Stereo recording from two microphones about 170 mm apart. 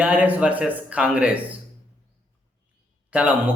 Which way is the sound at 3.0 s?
5° right (ahead or behind).